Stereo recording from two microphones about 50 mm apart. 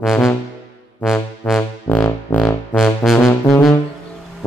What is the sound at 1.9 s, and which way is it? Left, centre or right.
Music, left.